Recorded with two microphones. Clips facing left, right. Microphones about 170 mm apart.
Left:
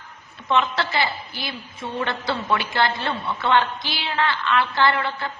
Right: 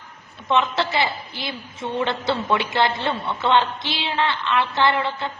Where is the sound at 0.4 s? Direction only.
20° right (ahead or behind).